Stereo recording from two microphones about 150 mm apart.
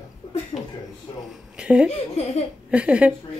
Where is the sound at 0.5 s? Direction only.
40° left (ahead or behind).